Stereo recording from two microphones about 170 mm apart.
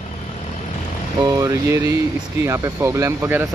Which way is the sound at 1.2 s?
20° right (ahead or behind).